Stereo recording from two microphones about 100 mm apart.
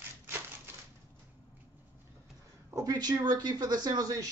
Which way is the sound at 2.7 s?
40° right (ahead or behind).